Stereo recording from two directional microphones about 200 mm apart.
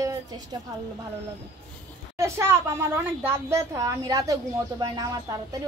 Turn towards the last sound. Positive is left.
turn(degrees=-20)  # may be behind; listen again after turning